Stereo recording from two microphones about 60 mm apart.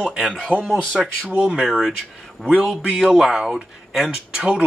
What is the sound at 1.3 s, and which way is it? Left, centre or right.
Speech, centre.